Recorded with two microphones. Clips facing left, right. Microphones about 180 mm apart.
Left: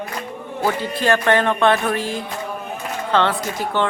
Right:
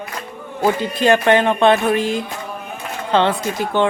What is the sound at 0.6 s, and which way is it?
Speech, 20° right (ahead or behind).